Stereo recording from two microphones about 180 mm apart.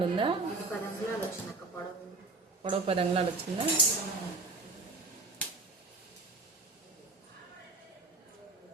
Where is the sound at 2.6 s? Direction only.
30° right (ahead or behind).